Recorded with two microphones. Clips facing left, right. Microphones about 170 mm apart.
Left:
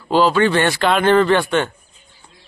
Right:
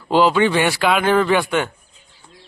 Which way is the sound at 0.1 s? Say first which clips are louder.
Even; 15° right (ahead or behind).